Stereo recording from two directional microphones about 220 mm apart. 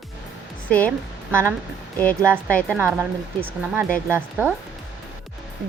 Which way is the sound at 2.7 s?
10° right (ahead or behind).